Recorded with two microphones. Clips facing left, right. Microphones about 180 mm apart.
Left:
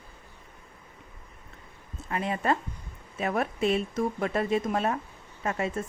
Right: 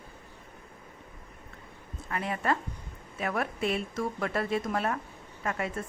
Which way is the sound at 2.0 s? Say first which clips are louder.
Left 3 dB; 25° left (ahead or behind).